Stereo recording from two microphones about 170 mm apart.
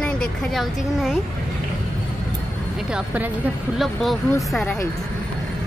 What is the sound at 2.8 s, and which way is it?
A woman's voice, 5° right (ahead or behind).